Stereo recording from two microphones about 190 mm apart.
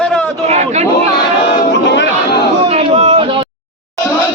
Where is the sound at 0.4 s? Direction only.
35° right (ahead or behind).